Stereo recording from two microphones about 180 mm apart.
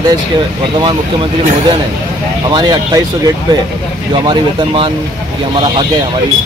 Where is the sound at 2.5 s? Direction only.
20° right (ahead or behind).